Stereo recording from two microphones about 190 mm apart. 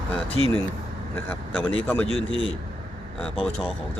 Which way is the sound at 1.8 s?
10° left (ahead or behind).